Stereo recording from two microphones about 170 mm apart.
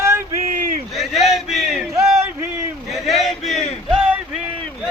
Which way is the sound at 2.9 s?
Centre (ahead or behind).